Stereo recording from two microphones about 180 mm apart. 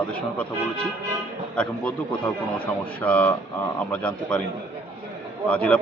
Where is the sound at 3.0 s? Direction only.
5° left (ahead or behind).